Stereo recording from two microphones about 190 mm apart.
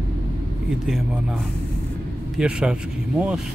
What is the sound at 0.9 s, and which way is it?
A man's voice, 5° right (ahead or behind).